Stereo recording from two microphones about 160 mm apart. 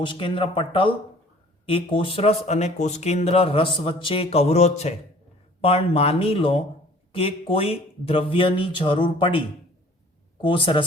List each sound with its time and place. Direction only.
0.0 s speech: 30° left (ahead or behind)
10.4 s speech: 30° left (ahead or behind)